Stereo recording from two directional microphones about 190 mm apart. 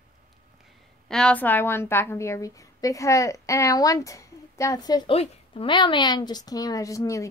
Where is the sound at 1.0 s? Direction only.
5° left (ahead or behind).